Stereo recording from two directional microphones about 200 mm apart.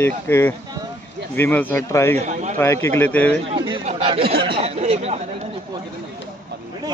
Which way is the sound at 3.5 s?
25° right (ahead or behind).